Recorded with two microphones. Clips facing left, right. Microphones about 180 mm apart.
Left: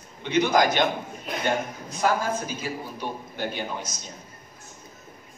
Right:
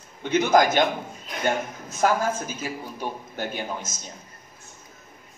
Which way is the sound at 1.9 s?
45° right (ahead or behind).